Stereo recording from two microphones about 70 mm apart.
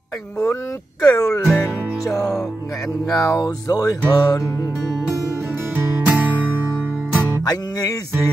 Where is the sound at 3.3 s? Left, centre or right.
Left.